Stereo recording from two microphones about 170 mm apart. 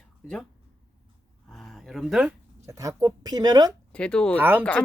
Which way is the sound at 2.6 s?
20° right (ahead or behind).